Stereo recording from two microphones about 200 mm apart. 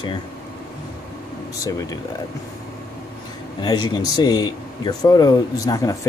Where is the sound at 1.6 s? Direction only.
15° left (ahead or behind).